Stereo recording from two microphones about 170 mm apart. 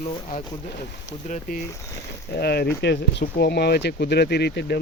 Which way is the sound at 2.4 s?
70° left (ahead or behind).